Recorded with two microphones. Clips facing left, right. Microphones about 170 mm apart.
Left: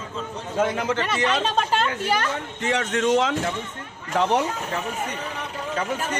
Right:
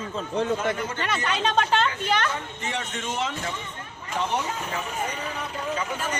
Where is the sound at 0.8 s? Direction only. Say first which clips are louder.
Left 6 dB; 90° left.